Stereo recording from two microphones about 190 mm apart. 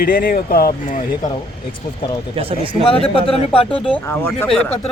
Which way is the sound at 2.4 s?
30° right (ahead or behind).